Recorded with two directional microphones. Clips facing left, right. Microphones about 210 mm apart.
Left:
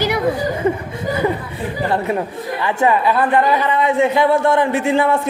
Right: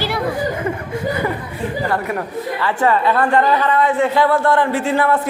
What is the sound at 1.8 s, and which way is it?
A man's voice, 25° left (ahead or behind).